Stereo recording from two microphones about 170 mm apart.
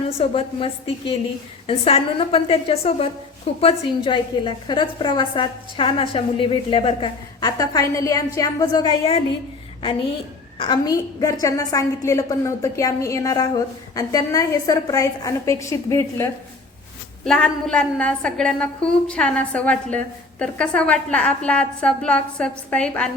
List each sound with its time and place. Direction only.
0.2 s a woman's voice: 35° left (ahead or behind)
10.6 s a woman's voice: 25° left (ahead or behind)
17.2 s a woman's voice: 5° left (ahead or behind)